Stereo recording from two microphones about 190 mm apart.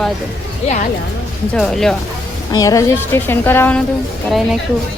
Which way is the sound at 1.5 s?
Centre (ahead or behind).